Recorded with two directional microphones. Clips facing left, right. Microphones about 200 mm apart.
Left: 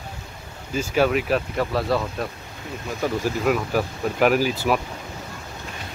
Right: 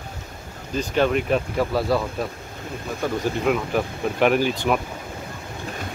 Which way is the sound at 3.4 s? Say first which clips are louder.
Even; centre (ahead or behind).